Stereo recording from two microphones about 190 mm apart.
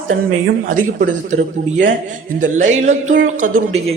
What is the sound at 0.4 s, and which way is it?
A woman's voice, 45° right (ahead or behind).